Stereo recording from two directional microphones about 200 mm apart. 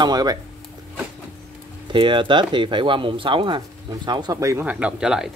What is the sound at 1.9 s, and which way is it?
Speech, 25° right (ahead or behind).